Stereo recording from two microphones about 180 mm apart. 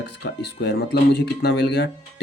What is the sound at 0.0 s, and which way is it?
Speech, 75° left (ahead or behind).